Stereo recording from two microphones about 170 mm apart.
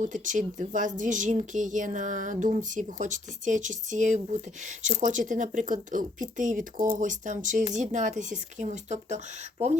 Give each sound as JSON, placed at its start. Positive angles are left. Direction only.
{"t": 0.0, "sound": "speech", "side_deg": -50}